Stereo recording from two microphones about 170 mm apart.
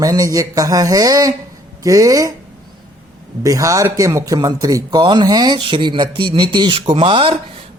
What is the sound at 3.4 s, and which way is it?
Speech, 20° right (ahead or behind).